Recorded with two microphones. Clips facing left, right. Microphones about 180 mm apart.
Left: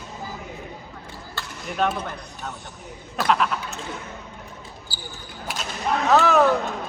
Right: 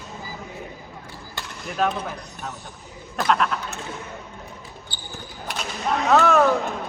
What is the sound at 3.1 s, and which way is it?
Speech, centre (ahead or behind).